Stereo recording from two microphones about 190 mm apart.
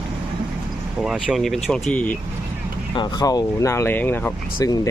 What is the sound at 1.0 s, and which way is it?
Speech, 5° right (ahead or behind).